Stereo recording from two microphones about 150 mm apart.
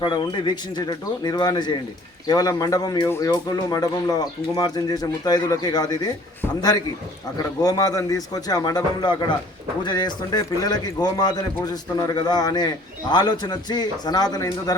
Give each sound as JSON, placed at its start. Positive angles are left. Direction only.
{"t": 0.0, "sound": "a man's voice", "side_deg": 30}
{"t": 7.6, "sound": "a man's voice", "side_deg": 25}